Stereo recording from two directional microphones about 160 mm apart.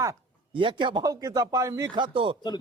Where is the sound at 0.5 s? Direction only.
30° right (ahead or behind).